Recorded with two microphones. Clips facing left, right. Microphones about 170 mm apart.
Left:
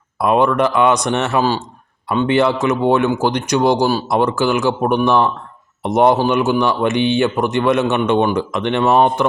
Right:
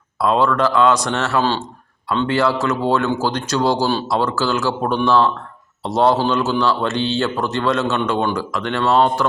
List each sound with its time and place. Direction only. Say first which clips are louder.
0.2 s a man's voice: left 2 dB; 20° left (ahead or behind)